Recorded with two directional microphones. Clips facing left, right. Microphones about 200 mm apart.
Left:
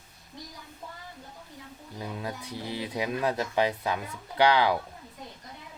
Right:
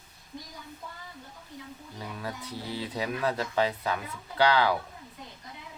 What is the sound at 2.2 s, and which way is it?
Speech, 20° left (ahead or behind).